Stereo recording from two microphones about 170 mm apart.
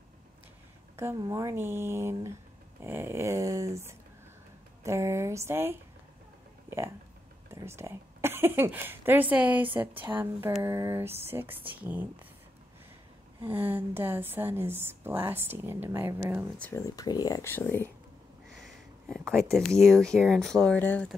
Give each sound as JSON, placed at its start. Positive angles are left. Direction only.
{"t": 0.9, "sound": "a woman's voice", "side_deg": -15}
{"t": 7.4, "sound": "a woman's voice", "side_deg": -15}
{"t": 13.5, "sound": "a woman's voice", "side_deg": -10}
{"t": 16.5, "sound": "speech", "side_deg": 10}
{"t": 16.8, "sound": "speech", "side_deg": 20}
{"t": 18.6, "sound": "sniff", "side_deg": 0}
{"t": 19.5, "sound": "speech", "side_deg": 0}